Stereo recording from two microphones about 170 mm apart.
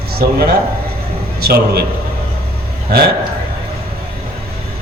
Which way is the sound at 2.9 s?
70° right (ahead or behind).